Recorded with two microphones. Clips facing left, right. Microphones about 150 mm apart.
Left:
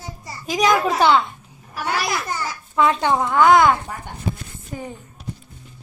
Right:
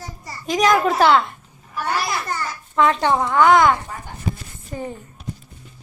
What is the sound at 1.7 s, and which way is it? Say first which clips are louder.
Babbling: even; 85° left.